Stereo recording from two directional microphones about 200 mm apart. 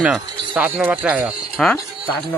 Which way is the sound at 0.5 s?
5° right (ahead or behind).